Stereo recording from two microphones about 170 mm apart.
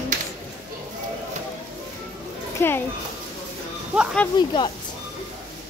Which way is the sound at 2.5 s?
15° left (ahead or behind).